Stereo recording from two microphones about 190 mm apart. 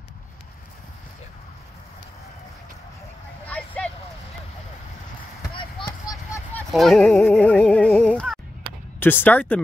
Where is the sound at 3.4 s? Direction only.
10° left (ahead or behind).